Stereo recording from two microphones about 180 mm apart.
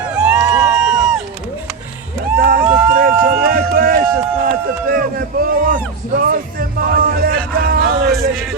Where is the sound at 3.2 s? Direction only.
50° right (ahead or behind).